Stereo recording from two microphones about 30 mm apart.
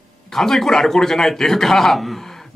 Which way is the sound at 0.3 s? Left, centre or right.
Centre.